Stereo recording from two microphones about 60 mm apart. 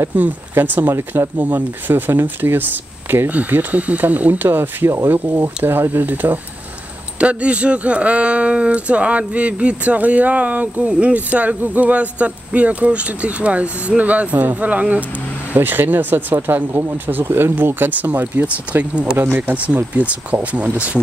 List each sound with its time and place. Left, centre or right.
0.1 s speech: right
0.9 s speech: right
1.4 s speech: right
7.2 s speech: right